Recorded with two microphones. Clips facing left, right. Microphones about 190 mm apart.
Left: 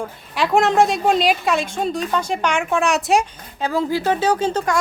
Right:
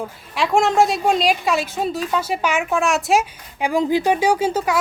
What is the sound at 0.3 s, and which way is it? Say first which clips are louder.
Speech: left 1 dB; centre (ahead or behind).